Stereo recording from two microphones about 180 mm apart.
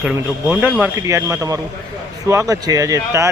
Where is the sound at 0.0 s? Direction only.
5° right (ahead or behind).